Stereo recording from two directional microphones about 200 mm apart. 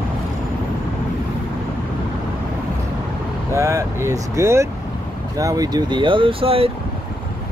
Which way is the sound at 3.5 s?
15° right (ahead or behind).